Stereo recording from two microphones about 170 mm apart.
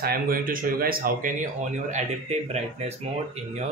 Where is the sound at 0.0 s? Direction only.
60° right (ahead or behind); by 2.6 s 40° right (ahead or behind).